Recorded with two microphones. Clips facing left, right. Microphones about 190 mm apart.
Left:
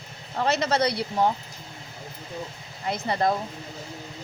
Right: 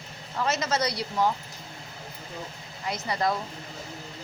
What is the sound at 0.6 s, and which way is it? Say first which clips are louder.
Speech: left 4 dB; 60° left (ahead or behind).